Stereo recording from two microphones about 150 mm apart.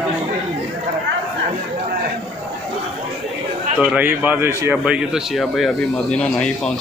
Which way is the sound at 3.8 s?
10° right (ahead or behind).